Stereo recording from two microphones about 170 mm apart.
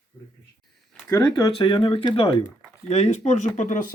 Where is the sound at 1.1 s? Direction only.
20° left (ahead or behind).